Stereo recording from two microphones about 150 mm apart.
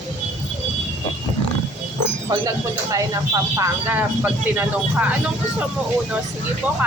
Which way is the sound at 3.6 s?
10° right (ahead or behind).